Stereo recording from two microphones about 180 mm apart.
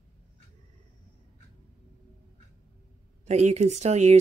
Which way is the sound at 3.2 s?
40° right (ahead or behind).